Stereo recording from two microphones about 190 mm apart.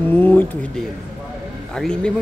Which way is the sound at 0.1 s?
10° left (ahead or behind).